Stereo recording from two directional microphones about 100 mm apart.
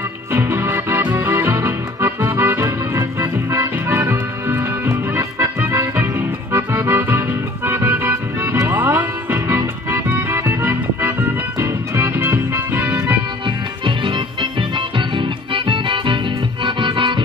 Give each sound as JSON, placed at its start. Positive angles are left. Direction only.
{"t": 0.3, "sound": "music", "side_deg": -25}
{"t": 10.0, "sound": "music", "side_deg": -20}
{"t": 13.8, "sound": "organ", "side_deg": -60}
{"t": 16.6, "sound": "music", "side_deg": -60}